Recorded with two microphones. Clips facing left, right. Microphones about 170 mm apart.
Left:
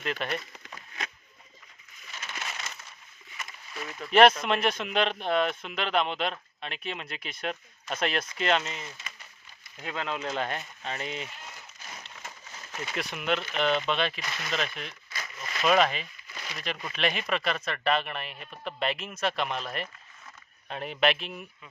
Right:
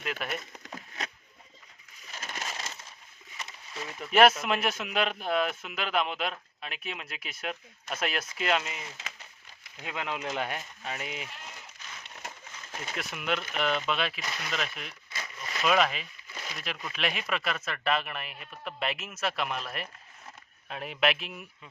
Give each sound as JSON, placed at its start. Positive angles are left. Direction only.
{"t": 0.0, "sound": "speech", "side_deg": -5}
{"t": 0.5, "sound": "a sound", "side_deg": -40}
{"t": 2.1, "sound": "coin", "side_deg": -40}
{"t": 3.3, "sound": "a sound", "side_deg": -25}
{"t": 4.1, "sound": "speech", "side_deg": -5}
{"t": 9.8, "sound": "speech", "side_deg": -15}
{"t": 13.0, "sound": "speech", "side_deg": 0}